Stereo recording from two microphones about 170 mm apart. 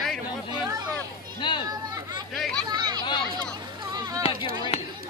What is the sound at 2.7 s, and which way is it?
Chatter, 25° right (ahead or behind).